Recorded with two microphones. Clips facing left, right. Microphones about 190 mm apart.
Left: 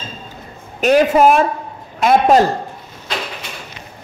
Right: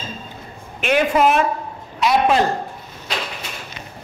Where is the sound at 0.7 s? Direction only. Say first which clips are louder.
Left 5 dB; 40° left (ahead or behind).